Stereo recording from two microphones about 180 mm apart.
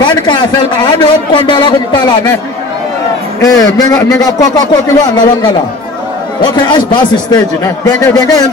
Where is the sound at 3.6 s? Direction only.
20° left (ahead or behind).